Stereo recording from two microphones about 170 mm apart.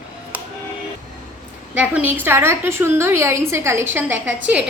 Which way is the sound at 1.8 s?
10° right (ahead or behind).